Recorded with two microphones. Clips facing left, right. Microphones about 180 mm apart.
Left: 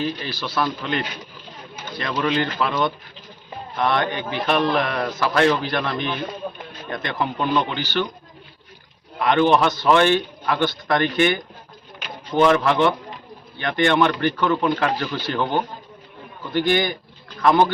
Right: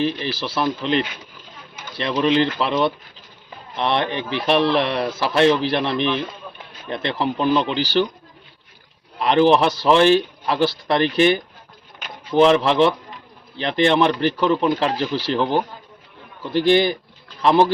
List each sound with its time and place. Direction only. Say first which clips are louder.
0.2 s speech: right 2 dB; 25° right (ahead or behind)
6.4 s a sound: left 7 dB; 45° left (ahead or behind)
6.9 s speech: right 3 dB; 30° right (ahead or behind)
9.2 s a man's voice: right 2 dB; 30° right (ahead or behind)
12.4 s speech: right 2 dB; 25° right (ahead or behind)
16.5 s speech: right 4 dB; 30° right (ahead or behind)